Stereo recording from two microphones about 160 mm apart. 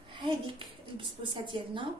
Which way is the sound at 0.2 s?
30° right (ahead or behind).